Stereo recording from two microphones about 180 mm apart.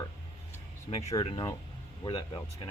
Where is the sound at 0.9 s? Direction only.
35° left (ahead or behind).